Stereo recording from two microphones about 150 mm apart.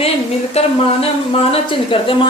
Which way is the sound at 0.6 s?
45° left (ahead or behind).